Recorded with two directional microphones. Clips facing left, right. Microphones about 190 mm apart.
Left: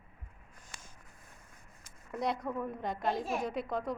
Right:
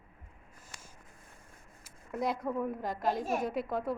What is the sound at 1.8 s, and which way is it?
A woman's voice, 5° right (ahead or behind).